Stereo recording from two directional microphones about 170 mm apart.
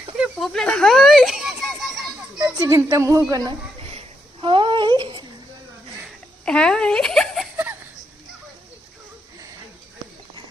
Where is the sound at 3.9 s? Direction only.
30° right (ahead or behind).